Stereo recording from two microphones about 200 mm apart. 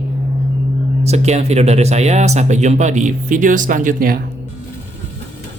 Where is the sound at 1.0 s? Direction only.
35° right (ahead or behind).